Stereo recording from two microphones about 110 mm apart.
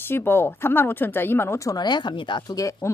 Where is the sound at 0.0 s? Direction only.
20° left (ahead or behind); by 2.6 s 45° left (ahead or behind).